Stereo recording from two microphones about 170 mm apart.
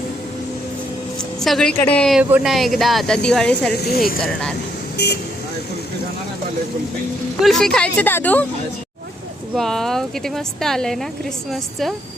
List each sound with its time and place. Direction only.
1.4 s speech: centre (ahead or behind)
3.8 s speech: 65° left (ahead or behind)
4.2 s speech: 5° left (ahead or behind)
5.0 s speech: 80° left
7.4 s speech: centre (ahead or behind)
9.6 s speech: centre (ahead or behind)